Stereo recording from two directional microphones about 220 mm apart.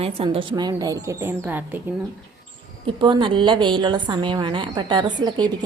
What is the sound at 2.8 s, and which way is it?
A woman's voice, 20° right (ahead or behind).